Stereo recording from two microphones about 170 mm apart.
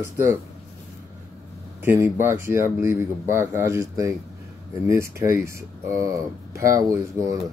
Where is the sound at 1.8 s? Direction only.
15° right (ahead or behind).